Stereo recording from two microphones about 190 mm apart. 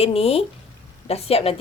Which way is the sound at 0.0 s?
30° left (ahead or behind).